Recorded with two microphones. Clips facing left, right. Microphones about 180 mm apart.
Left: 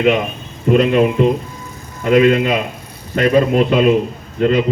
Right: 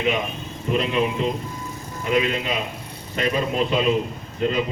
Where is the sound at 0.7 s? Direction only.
60° left (ahead or behind).